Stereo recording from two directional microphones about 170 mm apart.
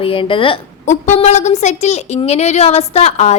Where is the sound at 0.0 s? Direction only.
30° left (ahead or behind).